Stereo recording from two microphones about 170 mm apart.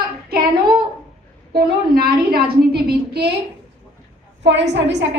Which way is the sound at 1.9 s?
65° right (ahead or behind).